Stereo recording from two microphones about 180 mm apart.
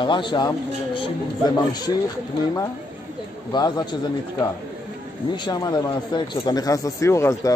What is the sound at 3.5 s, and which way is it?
Speech, 25° left (ahead or behind).